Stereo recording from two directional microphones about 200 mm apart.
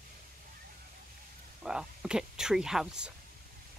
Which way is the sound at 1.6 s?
5° right (ahead or behind).